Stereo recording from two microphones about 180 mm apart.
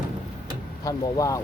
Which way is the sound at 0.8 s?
20° left (ahead or behind).